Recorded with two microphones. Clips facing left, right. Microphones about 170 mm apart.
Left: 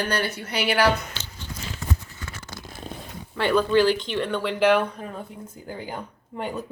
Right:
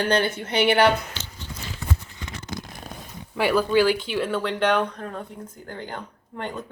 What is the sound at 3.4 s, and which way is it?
A woman's voice, 10° right (ahead or behind).